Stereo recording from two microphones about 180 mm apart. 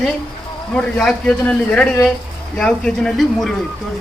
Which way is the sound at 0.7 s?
5° left (ahead or behind).